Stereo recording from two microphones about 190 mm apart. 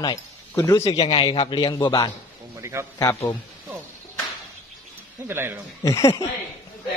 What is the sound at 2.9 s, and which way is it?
Speech, 15° left (ahead or behind).